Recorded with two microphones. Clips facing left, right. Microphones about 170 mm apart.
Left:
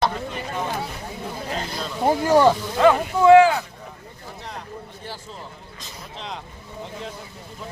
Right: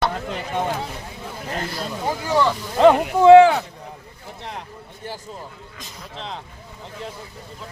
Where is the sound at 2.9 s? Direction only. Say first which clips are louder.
Right 3 dB; 70° right (ahead or behind).